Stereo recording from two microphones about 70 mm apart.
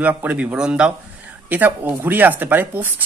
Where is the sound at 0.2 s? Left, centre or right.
Right.